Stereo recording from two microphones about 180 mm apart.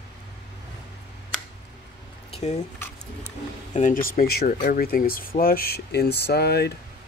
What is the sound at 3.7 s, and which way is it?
Speech, 45° left (ahead or behind).